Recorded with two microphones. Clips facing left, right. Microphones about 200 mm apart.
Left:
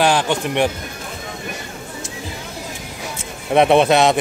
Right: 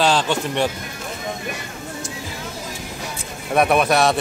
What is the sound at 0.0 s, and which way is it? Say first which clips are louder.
Speech: left 2 dB; 15° left (ahead or behind).